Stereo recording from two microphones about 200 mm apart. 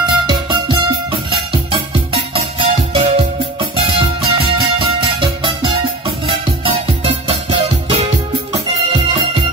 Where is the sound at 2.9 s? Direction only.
30° right (ahead or behind).